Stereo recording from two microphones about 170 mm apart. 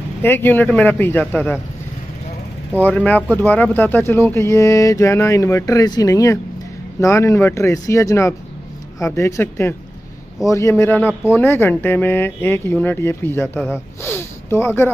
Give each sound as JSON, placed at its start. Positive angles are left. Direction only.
{"t": 0.2, "sound": "speech", "side_deg": 10}
{"t": 2.8, "sound": "speech", "side_deg": 10}